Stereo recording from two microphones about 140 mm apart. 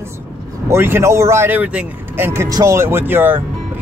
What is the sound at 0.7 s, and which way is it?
Speech, 15° right (ahead or behind).